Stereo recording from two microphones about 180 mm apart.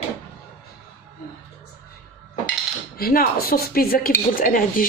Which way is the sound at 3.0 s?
55° left (ahead or behind).